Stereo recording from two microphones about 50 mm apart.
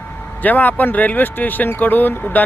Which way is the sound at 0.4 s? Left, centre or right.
Left.